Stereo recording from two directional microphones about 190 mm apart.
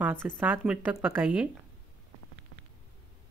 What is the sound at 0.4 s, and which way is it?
A woman's voice, 5° right (ahead or behind).